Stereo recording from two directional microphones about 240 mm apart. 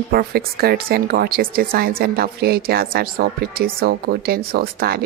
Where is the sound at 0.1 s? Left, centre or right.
Right.